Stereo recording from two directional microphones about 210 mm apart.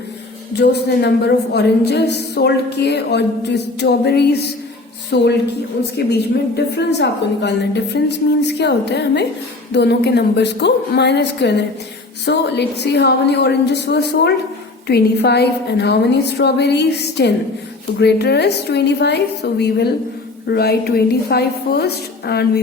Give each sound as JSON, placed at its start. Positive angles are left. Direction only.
{"t": 0.5, "sound": "a woman's voice", "side_deg": 50}